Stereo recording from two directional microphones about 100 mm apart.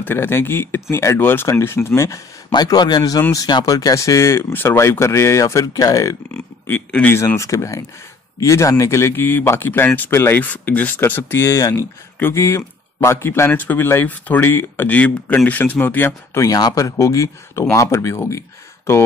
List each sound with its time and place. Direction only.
0.0 s speech: 20° left (ahead or behind)
2.5 s speech: 45° left (ahead or behind)
7.1 s speech: 25° left (ahead or behind)
16.3 s speech: 40° left (ahead or behind)